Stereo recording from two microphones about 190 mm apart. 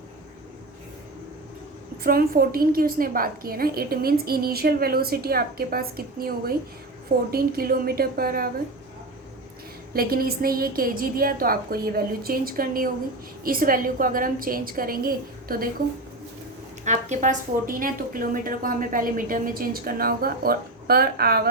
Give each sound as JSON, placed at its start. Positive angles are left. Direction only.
{"t": 2.0, "sound": "speech", "side_deg": -50}
{"t": 9.9, "sound": "speech", "side_deg": -50}
{"t": 16.8, "sound": "speech", "side_deg": -40}